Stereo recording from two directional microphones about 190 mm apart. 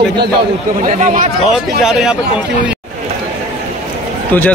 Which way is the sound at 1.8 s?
5° right (ahead or behind).